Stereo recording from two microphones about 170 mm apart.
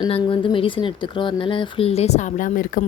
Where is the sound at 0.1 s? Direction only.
30° left (ahead or behind).